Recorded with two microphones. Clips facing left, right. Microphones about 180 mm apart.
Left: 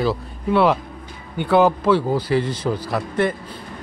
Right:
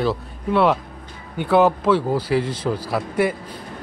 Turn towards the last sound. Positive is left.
turn(degrees=-10)  # may be behind; listen again after turning